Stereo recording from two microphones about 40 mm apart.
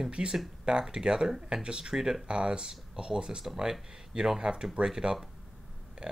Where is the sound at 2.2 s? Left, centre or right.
Right.